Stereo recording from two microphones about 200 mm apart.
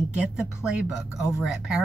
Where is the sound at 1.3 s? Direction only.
Centre (ahead or behind).